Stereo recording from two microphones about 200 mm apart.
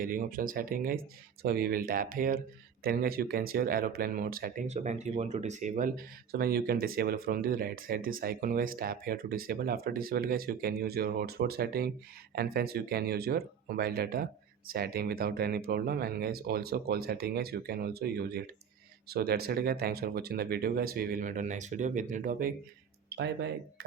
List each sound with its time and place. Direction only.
0.0 s speech: 45° right (ahead or behind)
23.0 s speech: 55° right (ahead or behind)